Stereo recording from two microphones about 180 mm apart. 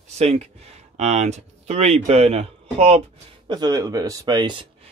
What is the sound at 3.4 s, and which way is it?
Speech, 25° right (ahead or behind).